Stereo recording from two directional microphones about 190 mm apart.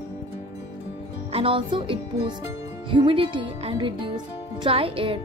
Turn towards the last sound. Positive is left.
turn(degrees=-30)  # may be behind; listen again after turning